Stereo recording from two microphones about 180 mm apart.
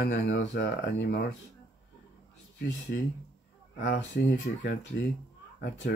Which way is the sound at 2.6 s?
75° left (ahead or behind).